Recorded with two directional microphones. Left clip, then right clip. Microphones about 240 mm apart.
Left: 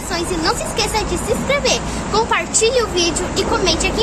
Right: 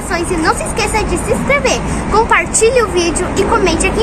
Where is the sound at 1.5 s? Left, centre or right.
Centre.